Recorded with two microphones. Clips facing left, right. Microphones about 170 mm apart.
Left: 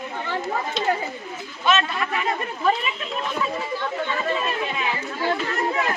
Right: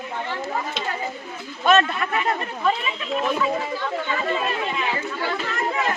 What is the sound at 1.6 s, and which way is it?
Speech, 45° right (ahead or behind).